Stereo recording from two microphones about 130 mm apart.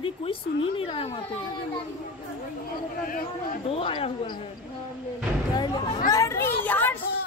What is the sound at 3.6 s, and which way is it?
Speech, 45° left (ahead or behind).